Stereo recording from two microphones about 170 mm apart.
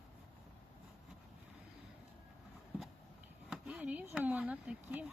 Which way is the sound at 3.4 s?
5° right (ahead or behind).